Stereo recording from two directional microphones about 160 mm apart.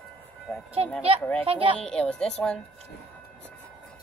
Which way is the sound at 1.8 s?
5° left (ahead or behind).